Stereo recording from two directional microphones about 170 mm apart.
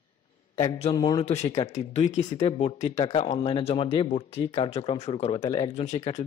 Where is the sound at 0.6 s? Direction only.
35° left (ahead or behind).